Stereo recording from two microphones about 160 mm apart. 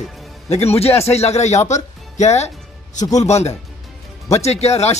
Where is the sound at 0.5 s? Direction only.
40° left (ahead or behind).